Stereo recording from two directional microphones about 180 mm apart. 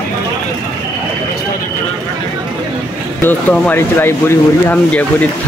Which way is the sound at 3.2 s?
10° left (ahead or behind).